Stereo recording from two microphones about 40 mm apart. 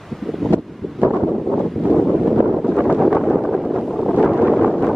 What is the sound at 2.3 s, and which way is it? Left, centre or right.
Wind noise, centre.